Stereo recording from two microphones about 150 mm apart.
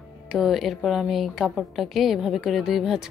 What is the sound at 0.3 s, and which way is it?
A woman's voice, centre (ahead or behind).